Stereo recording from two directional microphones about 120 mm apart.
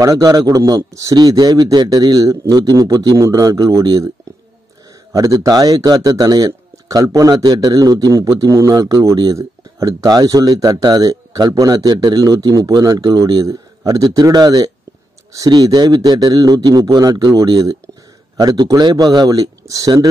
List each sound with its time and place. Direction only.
0.0 s speech: 30° right (ahead or behind)
5.1 s speech: 30° right (ahead or behind)